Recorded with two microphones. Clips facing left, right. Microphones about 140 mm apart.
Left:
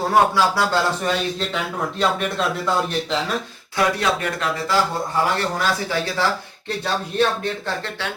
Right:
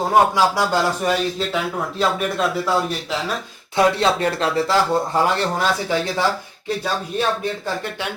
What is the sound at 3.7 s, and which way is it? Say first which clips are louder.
Speech: right 4 dB; 30° right (ahead or behind).